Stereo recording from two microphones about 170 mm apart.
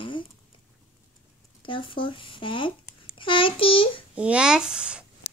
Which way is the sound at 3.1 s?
30° left (ahead or behind).